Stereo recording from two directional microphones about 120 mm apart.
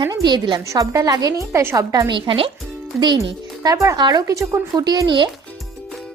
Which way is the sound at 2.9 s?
35° right (ahead or behind).